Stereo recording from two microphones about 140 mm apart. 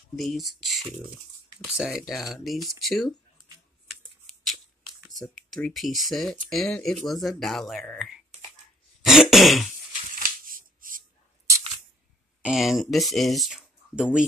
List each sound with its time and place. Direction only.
0.2 s speech: centre (ahead or behind)
3.8 s shuffling cards: centre (ahead or behind)
5.1 s speech: 5° left (ahead or behind)
9.0 s throat clearing: 5° right (ahead or behind)
10.1 s a sound: 85° right
12.4 s speech: 5° right (ahead or behind)